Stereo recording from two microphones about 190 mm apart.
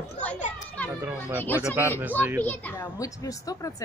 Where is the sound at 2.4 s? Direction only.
10° left (ahead or behind).